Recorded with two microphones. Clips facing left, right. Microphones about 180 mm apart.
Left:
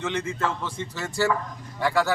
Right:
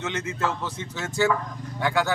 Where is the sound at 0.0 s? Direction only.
5° right (ahead or behind).